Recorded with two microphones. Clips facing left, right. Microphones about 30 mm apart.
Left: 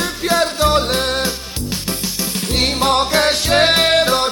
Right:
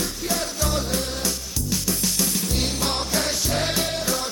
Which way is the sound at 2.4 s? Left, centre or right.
Left.